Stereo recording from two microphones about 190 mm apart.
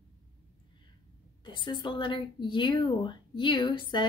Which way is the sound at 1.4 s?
25° left (ahead or behind).